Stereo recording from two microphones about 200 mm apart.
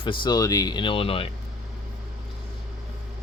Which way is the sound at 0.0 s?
25° left (ahead or behind).